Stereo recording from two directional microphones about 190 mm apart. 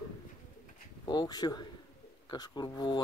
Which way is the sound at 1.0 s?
20° left (ahead or behind).